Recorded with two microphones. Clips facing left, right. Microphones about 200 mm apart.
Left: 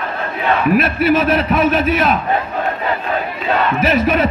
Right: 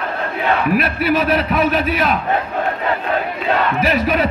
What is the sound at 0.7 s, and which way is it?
A man's voice, 45° left (ahead or behind).